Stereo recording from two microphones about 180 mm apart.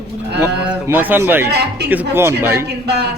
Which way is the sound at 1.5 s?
65° right (ahead or behind).